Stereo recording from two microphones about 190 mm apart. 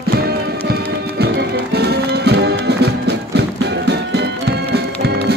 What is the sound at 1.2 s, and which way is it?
Music, 60° right (ahead or behind).